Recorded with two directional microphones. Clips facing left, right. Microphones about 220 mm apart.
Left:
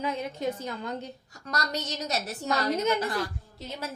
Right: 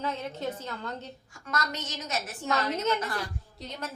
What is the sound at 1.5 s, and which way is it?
A woman's voice, 35° left (ahead or behind).